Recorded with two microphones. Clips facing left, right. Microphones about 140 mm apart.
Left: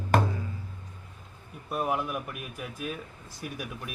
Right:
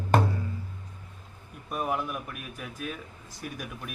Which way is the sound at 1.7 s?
Centre (ahead or behind).